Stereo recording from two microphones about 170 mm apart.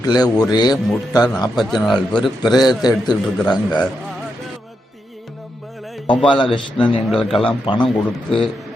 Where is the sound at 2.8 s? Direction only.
25° left (ahead or behind).